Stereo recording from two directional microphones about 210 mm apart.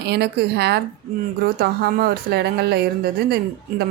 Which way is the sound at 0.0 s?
50° right (ahead or behind).